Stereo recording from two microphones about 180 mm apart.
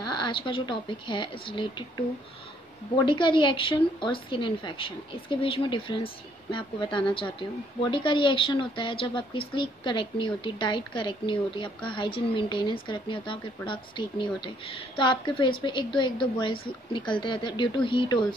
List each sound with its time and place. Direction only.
0.0 s speech: 25° left (ahead or behind)
3.1 s speech: 25° left (ahead or behind)